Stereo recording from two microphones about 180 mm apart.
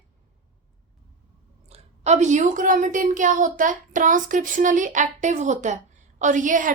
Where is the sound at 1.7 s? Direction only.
40° right (ahead or behind).